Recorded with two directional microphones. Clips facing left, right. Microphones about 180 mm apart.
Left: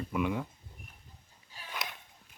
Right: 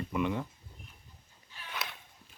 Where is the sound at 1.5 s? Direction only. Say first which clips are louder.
Even; 40° left (ahead or behind).